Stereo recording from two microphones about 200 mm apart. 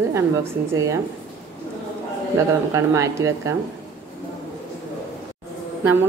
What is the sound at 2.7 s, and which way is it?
Speech, 15° right (ahead or behind).